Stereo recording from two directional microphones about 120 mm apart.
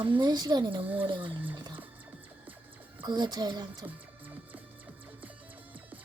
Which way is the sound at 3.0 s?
40° right (ahead or behind).